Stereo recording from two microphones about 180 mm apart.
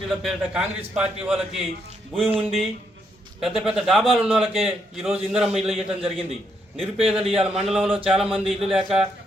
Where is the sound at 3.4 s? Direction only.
5° right (ahead or behind).